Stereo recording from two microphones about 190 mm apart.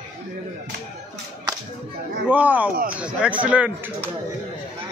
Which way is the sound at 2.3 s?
10° right (ahead or behind).